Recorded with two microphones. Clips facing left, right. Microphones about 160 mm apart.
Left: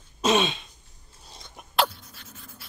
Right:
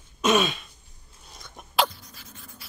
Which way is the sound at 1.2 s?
30° left (ahead or behind).